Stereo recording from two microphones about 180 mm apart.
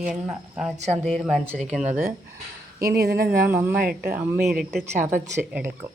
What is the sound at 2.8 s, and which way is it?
Speech, 65° right (ahead or behind).